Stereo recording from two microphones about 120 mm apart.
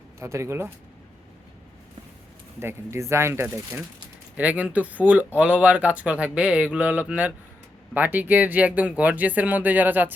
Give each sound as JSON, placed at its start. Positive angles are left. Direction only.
{"t": 0.2, "sound": "speech", "side_deg": -25}
{"t": 2.6, "sound": "speech", "side_deg": -20}